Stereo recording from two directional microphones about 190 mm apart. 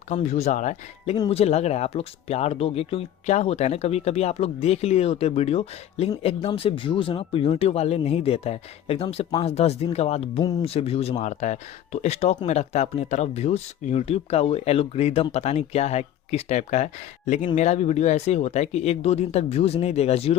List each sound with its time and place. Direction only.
0.1 s speech: 35° left (ahead or behind)
1.1 s speech: 20° left (ahead or behind)
1.4 s speech: 35° left (ahead or behind)
10.4 s speech: 20° left (ahead or behind)
10.7 s speech: 30° left (ahead or behind)